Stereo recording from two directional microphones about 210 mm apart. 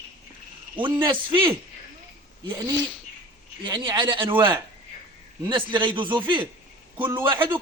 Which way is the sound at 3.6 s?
20° right (ahead or behind).